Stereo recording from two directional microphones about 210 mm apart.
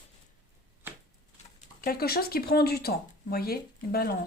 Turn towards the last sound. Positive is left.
turn(degrees=45)  # may be behind; listen again after turning